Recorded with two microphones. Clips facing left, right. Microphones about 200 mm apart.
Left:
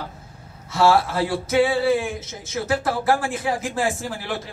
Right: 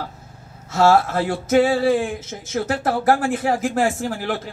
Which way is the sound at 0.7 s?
45° right (ahead or behind).